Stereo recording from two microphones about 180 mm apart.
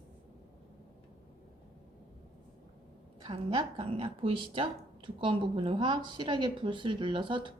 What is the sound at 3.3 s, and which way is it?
Speech, 30° right (ahead or behind).